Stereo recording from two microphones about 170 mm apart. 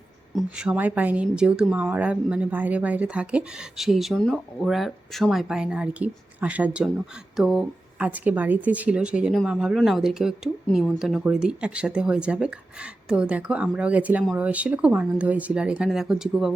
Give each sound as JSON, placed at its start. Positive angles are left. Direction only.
{"t": 0.3, "sound": "speech", "side_deg": -5}